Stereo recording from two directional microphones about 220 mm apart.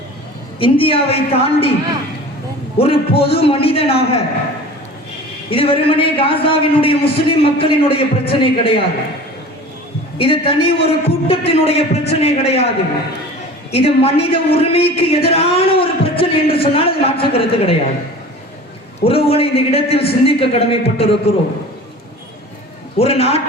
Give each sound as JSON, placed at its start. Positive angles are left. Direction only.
{"t": 0.6, "sound": "a man's voice", "side_deg": 25}
{"t": 2.7, "sound": "a man's voice", "side_deg": 25}
{"t": 5.5, "sound": "a man's voice", "side_deg": 25}
{"t": 10.2, "sound": "a man's voice", "side_deg": 25}
{"t": 19.0, "sound": "a man's voice", "side_deg": 25}
{"t": 23.0, "sound": "a man's voice", "side_deg": 25}